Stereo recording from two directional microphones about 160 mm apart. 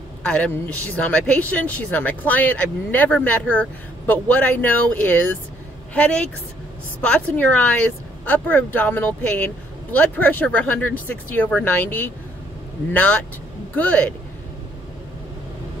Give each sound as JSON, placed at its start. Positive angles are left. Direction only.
{"t": 0.2, "sound": "speech", "side_deg": 5}